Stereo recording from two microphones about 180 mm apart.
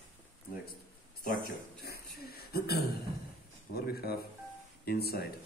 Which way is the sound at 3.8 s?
60° left (ahead or behind).